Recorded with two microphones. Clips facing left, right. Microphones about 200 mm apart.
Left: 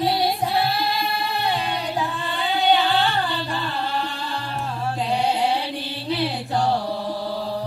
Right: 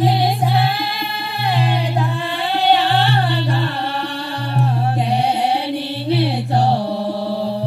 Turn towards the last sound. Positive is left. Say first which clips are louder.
# right 5 dB
turn(degrees=-65)  # may be behind; listen again after turning